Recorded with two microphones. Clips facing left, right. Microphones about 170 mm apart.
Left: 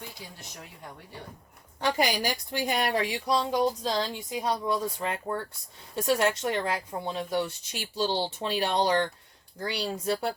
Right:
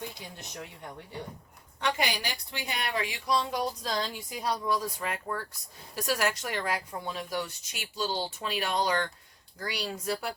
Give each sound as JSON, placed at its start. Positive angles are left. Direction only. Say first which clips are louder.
{"t": 0.0, "sound": "speech", "louder": "right 3 dB", "side_deg": -20}
{"t": 1.8, "sound": "a woman's voice", "louder": "left 4 dB", "side_deg": 40}